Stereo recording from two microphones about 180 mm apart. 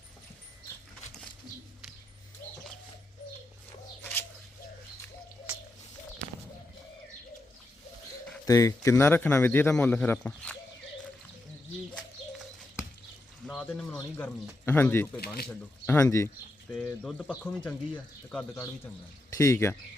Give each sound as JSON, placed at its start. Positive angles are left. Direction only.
{"t": 4.0, "sound": "bird", "side_deg": 10}
{"t": 8.4, "sound": "speech", "side_deg": 20}
{"t": 11.9, "sound": "bird", "side_deg": 0}
{"t": 13.5, "sound": "a man's voice", "side_deg": 5}
{"t": 16.8, "sound": "speech", "side_deg": 5}